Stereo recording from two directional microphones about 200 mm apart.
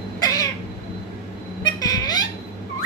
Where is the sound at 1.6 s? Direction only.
20° left (ahead or behind).